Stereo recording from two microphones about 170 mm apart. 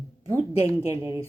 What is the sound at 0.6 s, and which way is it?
Speech, 20° right (ahead or behind).